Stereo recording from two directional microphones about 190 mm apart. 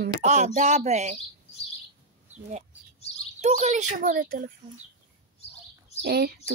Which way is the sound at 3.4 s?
35° right (ahead or behind).